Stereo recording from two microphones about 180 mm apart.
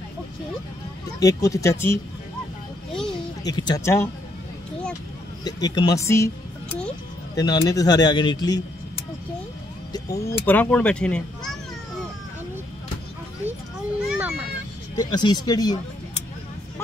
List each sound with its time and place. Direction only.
1.2 s speech: 20° left (ahead or behind)
3.4 s speech: 20° left (ahead or behind)
5.4 s speech: 20° left (ahead or behind)
7.3 s speech: 20° left (ahead or behind)
9.9 s speech: 20° left (ahead or behind)
13.5 s children playing: 5° right (ahead or behind)
15.0 s speech: 25° left (ahead or behind)